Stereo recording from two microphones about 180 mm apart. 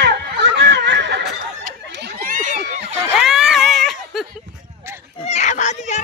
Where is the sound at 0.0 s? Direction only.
70° right (ahead or behind).